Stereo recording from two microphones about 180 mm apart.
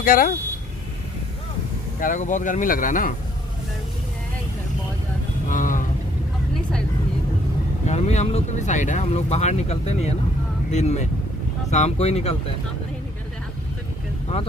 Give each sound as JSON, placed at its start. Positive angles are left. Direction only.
{"t": 0.0, "sound": "speech", "side_deg": 50}
{"t": 2.0, "sound": "speech", "side_deg": 45}
{"t": 5.5, "sound": "vehicle", "side_deg": 45}
{"t": 7.8, "sound": "speech", "side_deg": 40}